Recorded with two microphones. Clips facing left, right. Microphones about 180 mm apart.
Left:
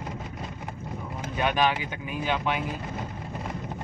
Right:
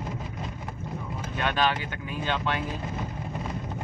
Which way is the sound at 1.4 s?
15° left (ahead or behind).